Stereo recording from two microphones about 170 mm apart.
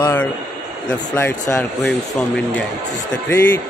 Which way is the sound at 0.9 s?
15° left (ahead or behind).